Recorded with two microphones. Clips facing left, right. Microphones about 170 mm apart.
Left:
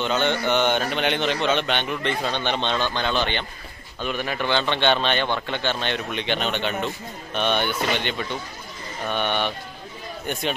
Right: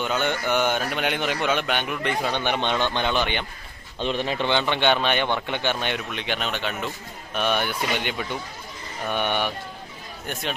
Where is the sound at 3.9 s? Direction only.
25° right (ahead or behind).